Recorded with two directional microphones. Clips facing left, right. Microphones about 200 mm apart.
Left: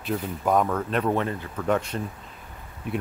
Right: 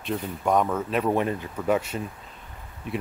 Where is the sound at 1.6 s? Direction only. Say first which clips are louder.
Even; 5° right (ahead or behind).